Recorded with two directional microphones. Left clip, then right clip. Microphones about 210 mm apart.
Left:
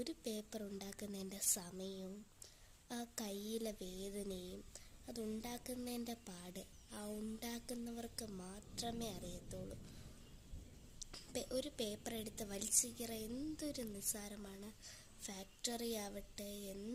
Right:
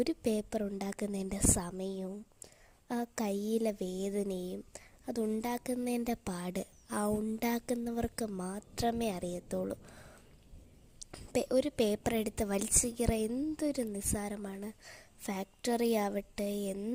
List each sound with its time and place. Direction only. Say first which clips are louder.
0.0 s a woman's voice: right 13 dB; 40° right (ahead or behind)
3.8 s a woman's voice: right 12 dB; 90° right
4.0 s a woman's voice: right 11 dB; 45° right (ahead or behind)
11.3 s a woman's voice: right 13 dB; 40° right (ahead or behind)